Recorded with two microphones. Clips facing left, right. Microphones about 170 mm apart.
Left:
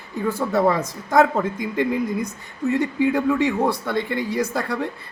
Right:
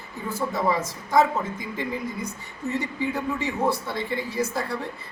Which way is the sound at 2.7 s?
60° left (ahead or behind).